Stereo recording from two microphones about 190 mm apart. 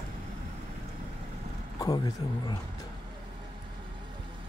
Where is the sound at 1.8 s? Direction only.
20° left (ahead or behind).